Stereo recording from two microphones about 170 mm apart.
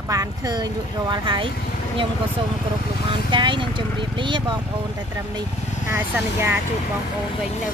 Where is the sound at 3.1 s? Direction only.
30° right (ahead or behind).